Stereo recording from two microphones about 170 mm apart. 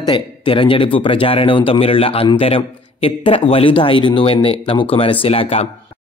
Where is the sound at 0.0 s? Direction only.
30° left (ahead or behind).